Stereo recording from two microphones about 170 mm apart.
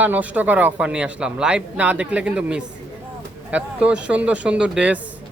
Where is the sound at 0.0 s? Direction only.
10° right (ahead or behind).